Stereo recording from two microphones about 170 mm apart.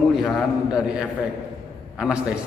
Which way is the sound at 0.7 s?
5° right (ahead or behind).